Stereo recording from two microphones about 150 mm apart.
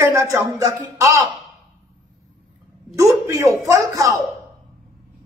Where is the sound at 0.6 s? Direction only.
20° right (ahead or behind).